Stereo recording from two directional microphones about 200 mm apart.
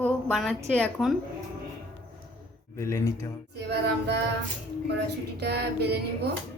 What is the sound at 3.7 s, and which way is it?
Female singing, 55° right (ahead or behind).